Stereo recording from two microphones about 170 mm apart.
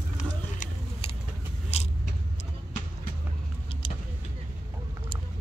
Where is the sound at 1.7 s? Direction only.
35° left (ahead or behind).